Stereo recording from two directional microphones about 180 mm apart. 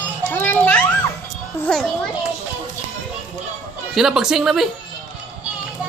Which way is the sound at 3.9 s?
Centre (ahead or behind).